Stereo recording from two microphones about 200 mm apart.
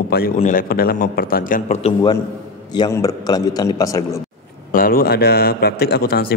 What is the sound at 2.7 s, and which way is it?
A man's voice, 20° left (ahead or behind).